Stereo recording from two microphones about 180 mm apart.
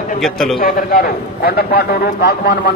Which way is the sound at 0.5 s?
55° left (ahead or behind).